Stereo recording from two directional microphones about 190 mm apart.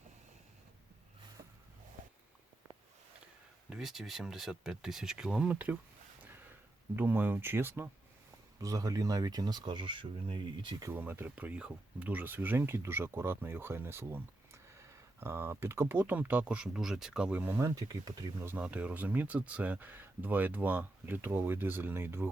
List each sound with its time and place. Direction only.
3.7 s speech: centre (ahead or behind)
6.9 s speech: 10° right (ahead or behind)
10.9 s speech: 10° right (ahead or behind)
18.5 s speech: 5° right (ahead or behind)